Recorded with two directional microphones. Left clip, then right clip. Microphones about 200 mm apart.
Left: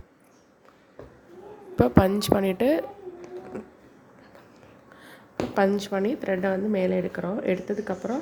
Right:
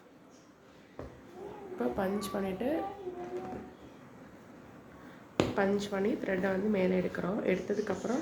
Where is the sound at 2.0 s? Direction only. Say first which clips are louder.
Left 12 dB; 50° left (ahead or behind).